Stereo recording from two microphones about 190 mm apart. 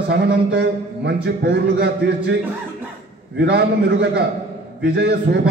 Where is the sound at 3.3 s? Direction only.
60° right (ahead or behind).